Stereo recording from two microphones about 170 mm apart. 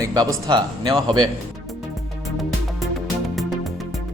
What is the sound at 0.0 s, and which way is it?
A man's voice, 20° right (ahead or behind).